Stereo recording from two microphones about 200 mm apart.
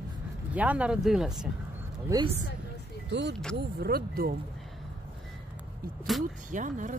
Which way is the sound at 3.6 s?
50° right (ahead or behind).